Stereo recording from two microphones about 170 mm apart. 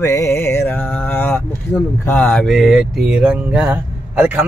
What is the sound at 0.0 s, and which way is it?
Mantra, 15° left (ahead or behind).